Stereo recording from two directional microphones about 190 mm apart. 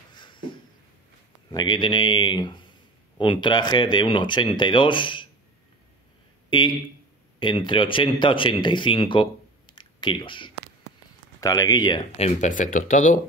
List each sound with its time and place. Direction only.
0.1 s a sound: 25° left (ahead or behind)
1.5 s speech: 25° left (ahead or behind)
7.3 s speech: 25° left (ahead or behind)
12.3 s speech: 40° left (ahead or behind)